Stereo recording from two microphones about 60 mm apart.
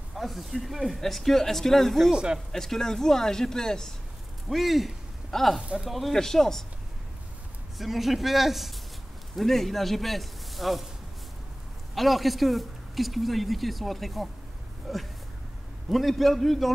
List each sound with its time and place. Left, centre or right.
0.1 s a man's voice: centre
2.1 s speech: centre
2.5 s speech: centre
4.5 s speech: centre
5.6 s speech: centre
5.9 s a man's voice: centre
7.7 s a man's voice: centre
11.9 s a man's voice: centre